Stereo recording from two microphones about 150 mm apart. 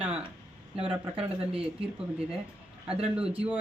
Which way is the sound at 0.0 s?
10° right (ahead or behind).